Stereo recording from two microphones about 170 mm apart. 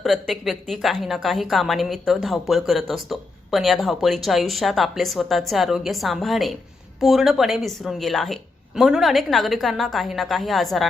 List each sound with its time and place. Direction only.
0.0 s a woman's voice: centre (ahead or behind)